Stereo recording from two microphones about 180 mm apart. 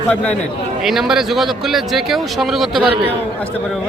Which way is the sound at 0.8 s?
Centre (ahead or behind).